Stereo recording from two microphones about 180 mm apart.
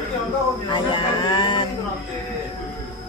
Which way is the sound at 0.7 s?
25° left (ahead or behind).